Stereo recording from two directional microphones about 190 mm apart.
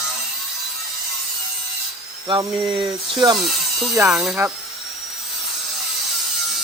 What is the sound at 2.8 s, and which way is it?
Speech, 25° right (ahead or behind).